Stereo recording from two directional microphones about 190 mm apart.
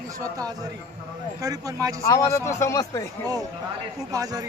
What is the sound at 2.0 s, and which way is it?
Speech, 15° left (ahead or behind).